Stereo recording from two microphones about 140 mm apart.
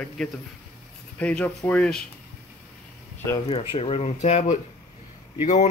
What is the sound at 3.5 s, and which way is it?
Speech, 45° left (ahead or behind).